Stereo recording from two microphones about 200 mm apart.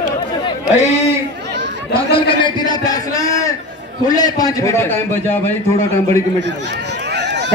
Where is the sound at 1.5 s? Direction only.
60° right (ahead or behind).